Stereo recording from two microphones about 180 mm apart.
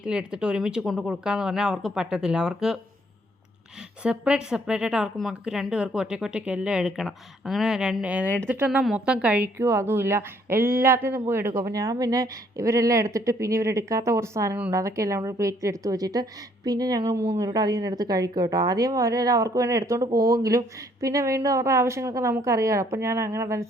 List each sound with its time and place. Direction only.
0.0 s a woman's voice: 5° right (ahead or behind)
4.0 s a woman's voice: 5° right (ahead or behind)